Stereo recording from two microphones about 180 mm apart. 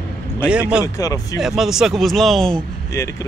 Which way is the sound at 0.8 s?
20° left (ahead or behind).